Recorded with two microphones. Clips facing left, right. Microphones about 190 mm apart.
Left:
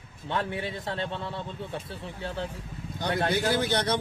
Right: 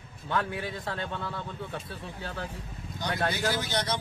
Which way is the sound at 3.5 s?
60° left (ahead or behind).